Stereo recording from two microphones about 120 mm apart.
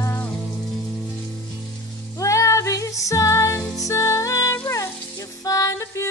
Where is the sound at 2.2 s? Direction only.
25° left (ahead or behind).